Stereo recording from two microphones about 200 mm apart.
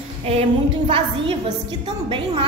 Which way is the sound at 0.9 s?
25° right (ahead or behind).